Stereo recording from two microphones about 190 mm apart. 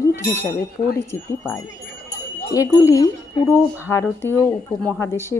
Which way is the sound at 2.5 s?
20° left (ahead or behind).